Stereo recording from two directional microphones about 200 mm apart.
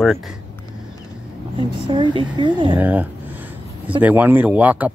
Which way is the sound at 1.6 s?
25° right (ahead or behind).